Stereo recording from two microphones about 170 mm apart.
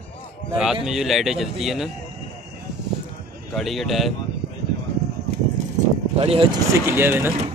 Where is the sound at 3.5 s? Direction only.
Centre (ahead or behind).